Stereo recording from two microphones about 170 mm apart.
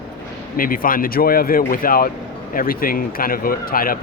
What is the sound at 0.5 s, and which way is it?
Speech, 55° left (ahead or behind).